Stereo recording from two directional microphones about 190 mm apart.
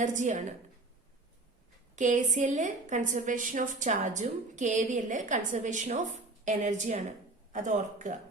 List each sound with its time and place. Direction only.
0.0 s a woman's voice: 40° right (ahead or behind)
2.0 s a woman's voice: 40° right (ahead or behind)